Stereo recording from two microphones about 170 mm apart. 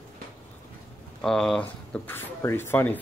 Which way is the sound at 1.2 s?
5° left (ahead or behind).